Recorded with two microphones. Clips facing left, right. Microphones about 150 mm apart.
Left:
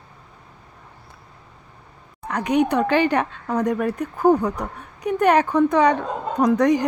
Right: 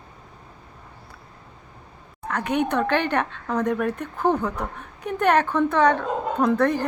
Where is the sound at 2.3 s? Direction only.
15° left (ahead or behind).